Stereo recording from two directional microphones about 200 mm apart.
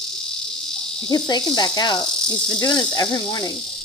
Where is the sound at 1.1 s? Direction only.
20° left (ahead or behind).